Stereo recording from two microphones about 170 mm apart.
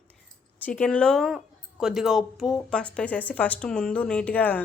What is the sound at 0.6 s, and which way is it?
A woman's voice, 10° left (ahead or behind).